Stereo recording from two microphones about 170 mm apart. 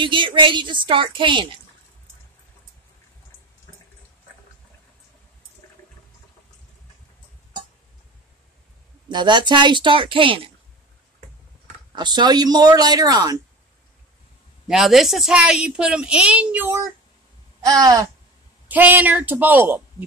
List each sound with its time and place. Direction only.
0.0 s speech: 30° right (ahead or behind)
9.1 s speech: 25° right (ahead or behind)
11.9 s speech: 25° right (ahead or behind)
14.7 s a woman's voice: centre (ahead or behind)